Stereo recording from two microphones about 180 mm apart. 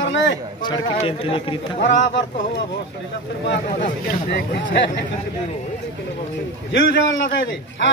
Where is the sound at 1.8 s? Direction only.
90° left.